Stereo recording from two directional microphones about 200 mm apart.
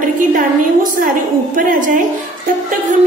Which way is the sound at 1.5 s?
40° right (ahead or behind).